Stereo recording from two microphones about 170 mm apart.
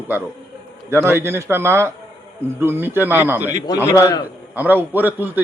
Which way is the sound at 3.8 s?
20° left (ahead or behind).